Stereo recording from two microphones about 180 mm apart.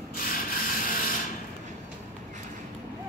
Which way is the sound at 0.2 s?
55° left (ahead or behind).